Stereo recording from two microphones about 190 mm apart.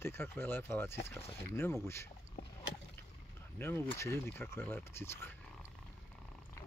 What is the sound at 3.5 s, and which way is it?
Speech, 10° left (ahead or behind).